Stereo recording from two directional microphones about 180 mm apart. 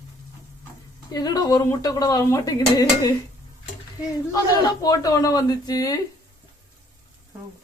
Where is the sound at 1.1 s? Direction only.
20° left (ahead or behind).